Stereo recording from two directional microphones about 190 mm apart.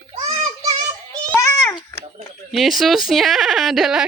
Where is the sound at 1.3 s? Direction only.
15° left (ahead or behind).